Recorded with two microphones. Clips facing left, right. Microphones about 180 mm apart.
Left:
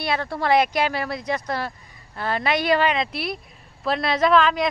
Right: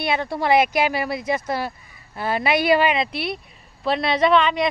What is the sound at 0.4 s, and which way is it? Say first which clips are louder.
Speech: right 1 dB; 5° right (ahead or behind).